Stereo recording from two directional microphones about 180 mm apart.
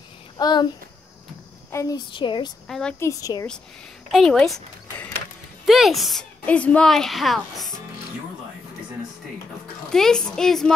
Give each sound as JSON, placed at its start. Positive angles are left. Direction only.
{"t": 0.4, "sound": "speech", "side_deg": 25}
{"t": 1.7, "sound": "speech", "side_deg": 20}
{"t": 2.7, "sound": "a woman's voice", "side_deg": 5}
{"t": 3.1, "sound": "speech", "side_deg": 20}
{"t": 4.1, "sound": "a woman's voice", "side_deg": 0}
{"t": 9.8, "sound": "a woman's voice", "side_deg": 0}